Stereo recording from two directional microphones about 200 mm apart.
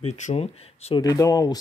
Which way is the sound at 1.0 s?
20° left (ahead or behind).